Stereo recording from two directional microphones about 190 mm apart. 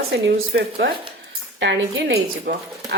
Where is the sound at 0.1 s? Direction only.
70° right (ahead or behind).